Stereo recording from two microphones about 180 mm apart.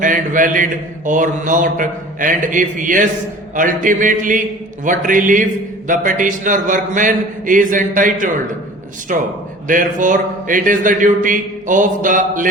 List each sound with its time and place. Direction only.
0.0 s mantra: 45° right (ahead or behind)